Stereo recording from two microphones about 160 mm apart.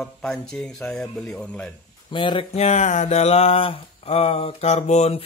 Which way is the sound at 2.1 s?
30° left (ahead or behind).